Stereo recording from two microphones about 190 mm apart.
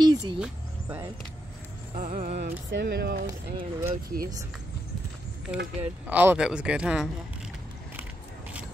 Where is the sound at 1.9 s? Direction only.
45° right (ahead or behind).